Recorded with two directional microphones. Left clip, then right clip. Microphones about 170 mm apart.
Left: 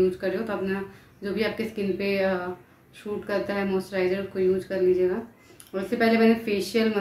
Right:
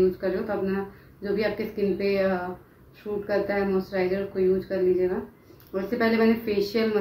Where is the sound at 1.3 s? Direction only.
15° left (ahead or behind).